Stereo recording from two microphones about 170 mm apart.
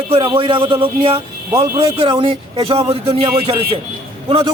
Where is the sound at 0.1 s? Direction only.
30° right (ahead or behind).